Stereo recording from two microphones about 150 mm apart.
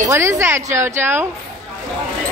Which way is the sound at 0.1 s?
20° right (ahead or behind).